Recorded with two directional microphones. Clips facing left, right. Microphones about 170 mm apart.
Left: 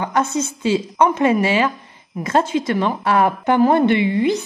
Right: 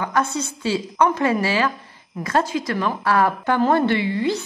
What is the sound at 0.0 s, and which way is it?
A woman's voice, 20° left (ahead or behind).